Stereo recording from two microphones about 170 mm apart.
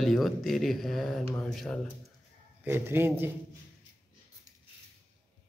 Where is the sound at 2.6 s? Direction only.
15° right (ahead or behind).